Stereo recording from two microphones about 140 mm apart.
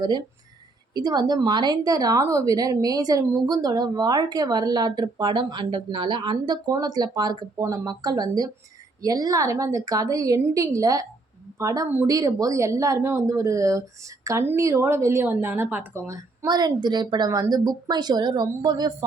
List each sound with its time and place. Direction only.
0.9 s a woman's voice: 30° right (ahead or behind)
16.5 s a woman's voice: 30° right (ahead or behind)